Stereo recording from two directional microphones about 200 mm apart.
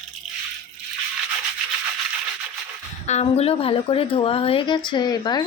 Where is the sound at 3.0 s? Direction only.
35° left (ahead or behind).